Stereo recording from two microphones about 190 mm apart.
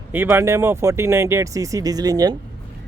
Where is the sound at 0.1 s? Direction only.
10° right (ahead or behind).